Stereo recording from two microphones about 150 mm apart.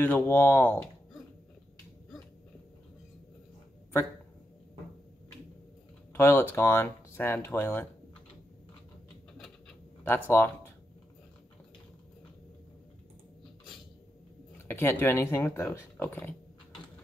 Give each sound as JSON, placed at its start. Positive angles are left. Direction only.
{"t": 0.0, "sound": "speech", "side_deg": 10}
{"t": 6.1, "sound": "speech", "side_deg": 15}
{"t": 10.0, "sound": "speech", "side_deg": 15}
{"t": 14.7, "sound": "speech", "side_deg": 15}